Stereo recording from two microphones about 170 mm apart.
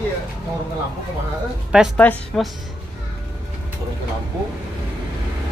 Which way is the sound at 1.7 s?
5° right (ahead or behind).